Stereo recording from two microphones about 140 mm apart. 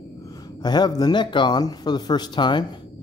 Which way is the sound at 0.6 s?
30° left (ahead or behind).